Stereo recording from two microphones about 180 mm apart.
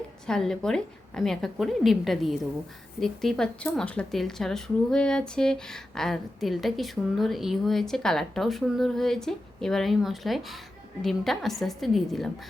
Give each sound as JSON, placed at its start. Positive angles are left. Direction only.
{"t": 0.3, "sound": "speech", "side_deg": 5}